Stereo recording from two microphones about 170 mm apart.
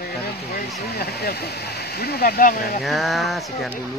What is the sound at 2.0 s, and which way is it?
Speech, 65° left (ahead or behind).